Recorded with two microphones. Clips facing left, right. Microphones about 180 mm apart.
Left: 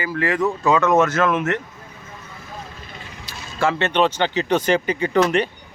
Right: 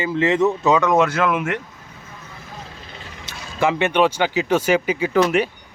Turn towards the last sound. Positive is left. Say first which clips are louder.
# even
turn(degrees=-10)  # may be behind; listen again after turning